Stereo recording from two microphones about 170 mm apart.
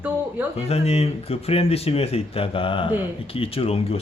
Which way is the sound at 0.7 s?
40° left (ahead or behind).